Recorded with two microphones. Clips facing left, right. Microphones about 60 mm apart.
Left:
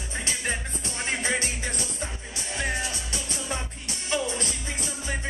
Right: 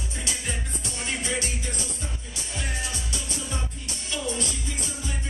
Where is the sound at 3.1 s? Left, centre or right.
Left.